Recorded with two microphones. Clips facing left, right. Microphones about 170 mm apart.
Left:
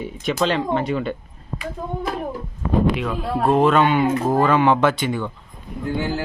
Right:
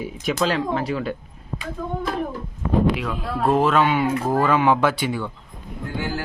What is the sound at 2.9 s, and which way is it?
Speech, centre (ahead or behind).